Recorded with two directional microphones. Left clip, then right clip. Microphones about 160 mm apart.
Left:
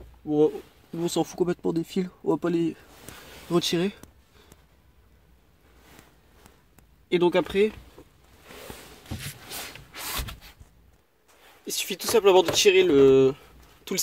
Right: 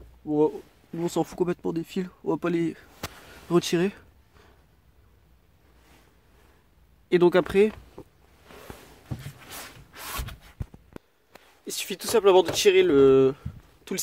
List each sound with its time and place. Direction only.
0.9 s speech: 5° right (ahead or behind)
3.4 s speech: 10° right (ahead or behind)
7.1 s speech: 20° right (ahead or behind)
9.5 s rub: 5° left (ahead or behind)
11.6 s speech: centre (ahead or behind)